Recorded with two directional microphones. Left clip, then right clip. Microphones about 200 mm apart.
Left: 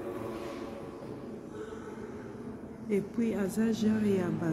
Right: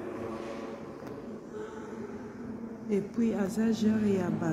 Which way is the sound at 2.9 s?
15° left (ahead or behind).